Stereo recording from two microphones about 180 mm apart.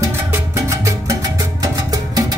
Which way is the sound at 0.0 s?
15° right (ahead or behind).